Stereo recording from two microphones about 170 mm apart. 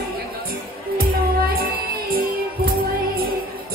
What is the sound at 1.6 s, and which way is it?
Music, 60° right (ahead or behind).